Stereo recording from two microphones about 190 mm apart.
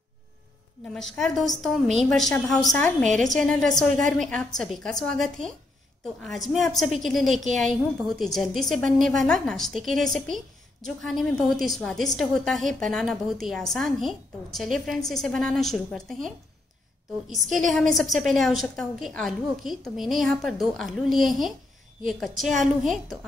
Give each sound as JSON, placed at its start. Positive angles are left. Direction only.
{"t": 0.9, "sound": "a woman's voice", "side_deg": 0}